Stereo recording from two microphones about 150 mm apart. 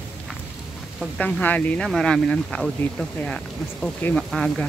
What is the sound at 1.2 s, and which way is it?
Speech, 10° left (ahead or behind).